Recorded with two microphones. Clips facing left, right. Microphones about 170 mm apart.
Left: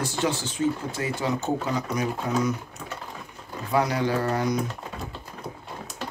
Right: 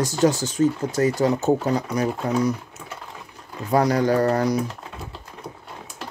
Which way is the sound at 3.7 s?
40° right (ahead or behind).